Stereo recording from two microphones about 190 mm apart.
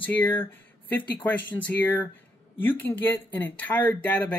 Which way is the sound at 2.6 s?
10° left (ahead or behind).